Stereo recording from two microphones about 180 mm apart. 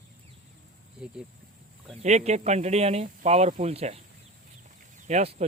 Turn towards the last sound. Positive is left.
turn(degrees=-40)  # may be behind; listen again after turning